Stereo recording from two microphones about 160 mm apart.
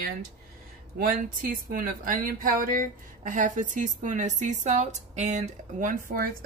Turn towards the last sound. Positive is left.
turn(degrees=-60)  # may be behind; listen again after turning